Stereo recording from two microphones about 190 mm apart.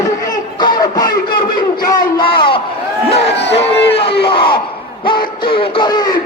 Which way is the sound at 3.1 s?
35° left (ahead or behind).